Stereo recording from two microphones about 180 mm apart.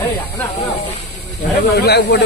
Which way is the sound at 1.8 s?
65° left (ahead or behind).